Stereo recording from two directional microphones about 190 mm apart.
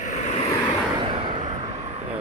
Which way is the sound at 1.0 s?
25° right (ahead or behind).